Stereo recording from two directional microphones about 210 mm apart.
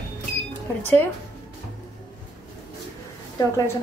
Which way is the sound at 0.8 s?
10° left (ahead or behind).